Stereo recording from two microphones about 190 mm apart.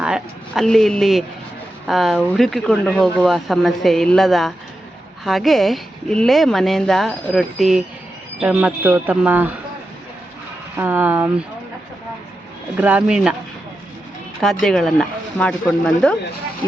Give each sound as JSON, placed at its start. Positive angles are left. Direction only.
{"t": 0.0, "sound": "speech", "side_deg": 0}
{"t": 10.8, "sound": "speech", "side_deg": -10}
{"t": 12.7, "sound": "speech", "side_deg": -10}
{"t": 14.4, "sound": "speech", "side_deg": 0}